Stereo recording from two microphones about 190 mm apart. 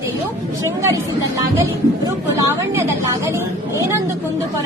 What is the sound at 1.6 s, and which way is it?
A woman's voice, 15° right (ahead or behind).